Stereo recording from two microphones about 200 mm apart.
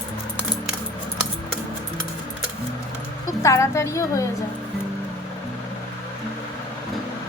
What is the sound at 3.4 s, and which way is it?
Speech, 15° left (ahead or behind).